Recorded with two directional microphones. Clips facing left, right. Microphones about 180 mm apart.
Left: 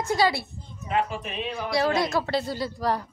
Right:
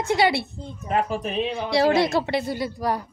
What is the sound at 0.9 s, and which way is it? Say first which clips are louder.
Speech: right 3 dB; 40° right (ahead or behind).